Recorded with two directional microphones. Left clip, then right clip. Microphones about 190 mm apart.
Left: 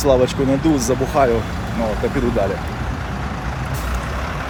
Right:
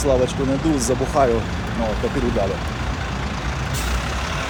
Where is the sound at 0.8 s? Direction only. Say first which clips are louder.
Left 2 dB; 5° left (ahead or behind).